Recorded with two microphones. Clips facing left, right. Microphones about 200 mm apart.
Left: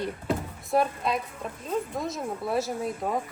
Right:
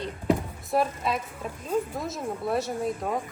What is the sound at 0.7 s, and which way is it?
A woman's voice, centre (ahead or behind).